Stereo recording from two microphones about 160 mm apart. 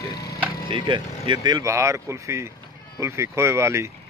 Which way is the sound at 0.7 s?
30° right (ahead or behind).